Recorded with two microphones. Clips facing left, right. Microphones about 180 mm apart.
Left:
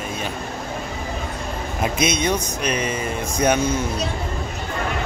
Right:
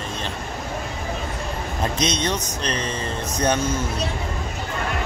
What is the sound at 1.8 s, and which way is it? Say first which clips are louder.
Speech: left 2 dB; 10° left (ahead or behind).